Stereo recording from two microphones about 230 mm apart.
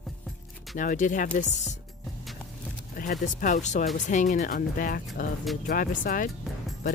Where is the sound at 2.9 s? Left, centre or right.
Left.